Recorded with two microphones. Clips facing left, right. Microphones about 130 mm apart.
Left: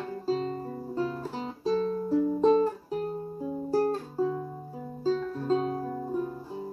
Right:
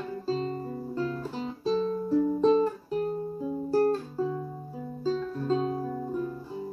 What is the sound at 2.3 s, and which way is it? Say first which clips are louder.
Music: left 2 dB; 15° left (ahead or behind).